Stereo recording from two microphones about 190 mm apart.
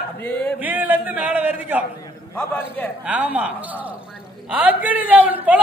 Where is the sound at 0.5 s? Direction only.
10° right (ahead or behind).